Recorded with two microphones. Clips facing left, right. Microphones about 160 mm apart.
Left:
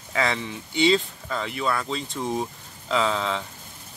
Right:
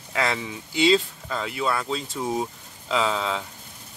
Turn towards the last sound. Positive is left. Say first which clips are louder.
# even
turn(degrees=-5)  # may be behind; listen again after turning